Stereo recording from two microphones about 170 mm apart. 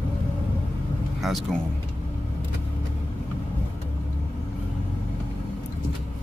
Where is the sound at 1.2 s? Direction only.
Centre (ahead or behind).